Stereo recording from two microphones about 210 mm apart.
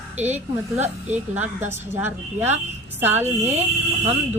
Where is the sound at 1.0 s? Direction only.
10° right (ahead or behind).